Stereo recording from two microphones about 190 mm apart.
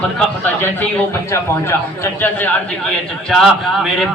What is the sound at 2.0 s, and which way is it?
A man's voice, 10° left (ahead or behind).